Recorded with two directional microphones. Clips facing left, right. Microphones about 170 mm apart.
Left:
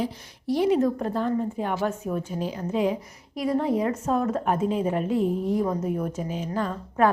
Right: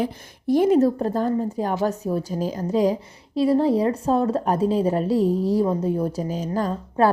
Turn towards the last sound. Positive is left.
turn(degrees=-35)  # may be behind; listen again after turning